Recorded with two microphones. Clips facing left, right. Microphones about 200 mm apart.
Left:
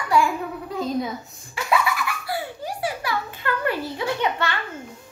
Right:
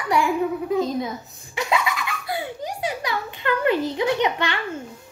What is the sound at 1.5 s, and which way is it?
Giggle, 20° right (ahead or behind).